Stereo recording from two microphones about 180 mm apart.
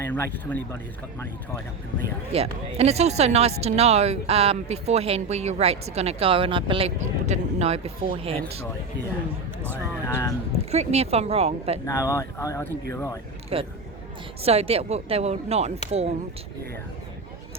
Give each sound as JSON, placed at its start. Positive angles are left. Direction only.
{"t": 0.0, "sound": "speech", "side_deg": 10}
{"t": 2.3, "sound": "speech", "side_deg": -35}
{"t": 9.6, "sound": "speech", "side_deg": -10}
{"t": 10.7, "sound": "speech", "side_deg": -35}
{"t": 11.9, "sound": "speech", "side_deg": 15}
{"t": 13.5, "sound": "speech", "side_deg": -30}